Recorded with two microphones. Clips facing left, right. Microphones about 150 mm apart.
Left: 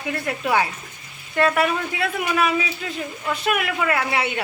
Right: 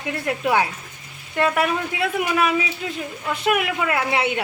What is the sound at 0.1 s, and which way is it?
A man's voice, 5° right (ahead or behind).